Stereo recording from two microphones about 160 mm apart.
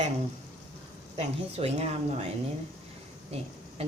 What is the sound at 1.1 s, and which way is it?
Speech, 40° right (ahead or behind).